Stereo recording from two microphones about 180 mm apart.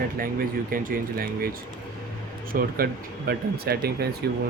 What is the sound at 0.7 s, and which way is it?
Speech, 55° right (ahead or behind).